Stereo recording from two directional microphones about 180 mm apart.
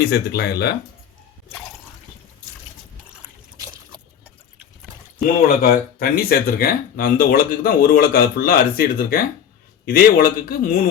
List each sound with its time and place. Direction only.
0.0 s speech: 65° left (ahead or behind)
5.6 s speech: 55° left (ahead or behind)